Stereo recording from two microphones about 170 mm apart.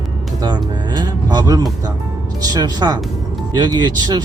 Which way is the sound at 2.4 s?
20° right (ahead or behind).